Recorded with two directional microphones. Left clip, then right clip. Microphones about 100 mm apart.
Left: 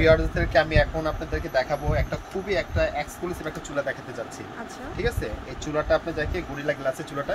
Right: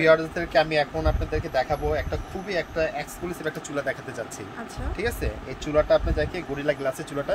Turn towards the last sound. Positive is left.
turn(degrees=-60)  # may be behind; listen again after turning